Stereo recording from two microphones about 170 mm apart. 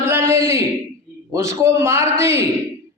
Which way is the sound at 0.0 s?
15° right (ahead or behind).